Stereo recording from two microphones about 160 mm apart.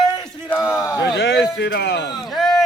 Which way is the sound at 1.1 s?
90° left.